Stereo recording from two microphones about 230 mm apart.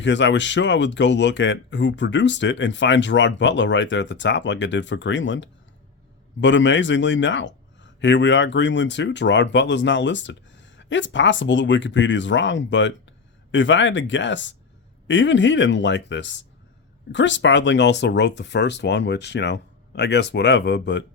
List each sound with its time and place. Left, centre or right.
0.0 s speech: left